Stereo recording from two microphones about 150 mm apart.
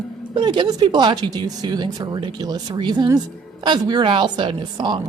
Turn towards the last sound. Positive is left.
turn(degrees=-30)  # may be behind; listen again after turning